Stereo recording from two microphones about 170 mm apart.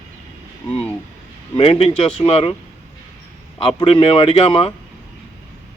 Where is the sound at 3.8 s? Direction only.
30° left (ahead or behind).